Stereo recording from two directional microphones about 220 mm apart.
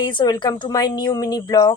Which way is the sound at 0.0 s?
20° left (ahead or behind).